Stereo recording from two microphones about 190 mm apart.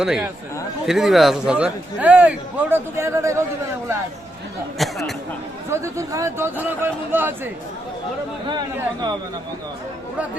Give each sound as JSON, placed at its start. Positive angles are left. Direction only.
{"t": 0.0, "sound": "a man's voice", "side_deg": 0}
{"t": 4.8, "sound": "speech", "side_deg": 0}
{"t": 5.7, "sound": "a man's voice", "side_deg": -15}
{"t": 8.4, "sound": "speech", "side_deg": -25}